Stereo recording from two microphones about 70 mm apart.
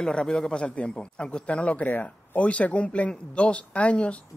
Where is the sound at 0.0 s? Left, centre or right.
Centre.